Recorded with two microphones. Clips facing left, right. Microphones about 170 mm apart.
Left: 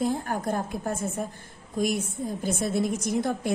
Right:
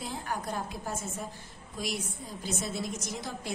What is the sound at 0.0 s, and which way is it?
A woman's voice, 50° left (ahead or behind).